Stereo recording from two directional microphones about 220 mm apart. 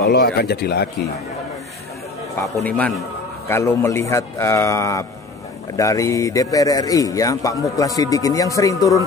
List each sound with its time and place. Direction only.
0.0 s speech: 45° left (ahead or behind)
2.5 s a man's voice: 5° left (ahead or behind)